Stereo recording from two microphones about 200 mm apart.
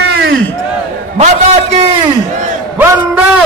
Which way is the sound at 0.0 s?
55° right (ahead or behind).